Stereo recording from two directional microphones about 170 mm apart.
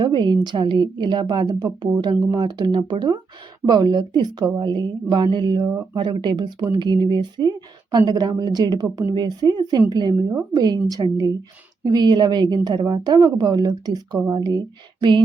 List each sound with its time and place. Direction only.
0.0 s a woman's voice: 25° right (ahead or behind)